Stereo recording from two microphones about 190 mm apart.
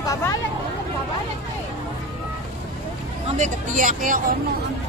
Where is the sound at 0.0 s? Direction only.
15° left (ahead or behind).